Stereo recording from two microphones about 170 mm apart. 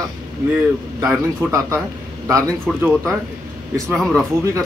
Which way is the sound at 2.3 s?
Centre (ahead or behind).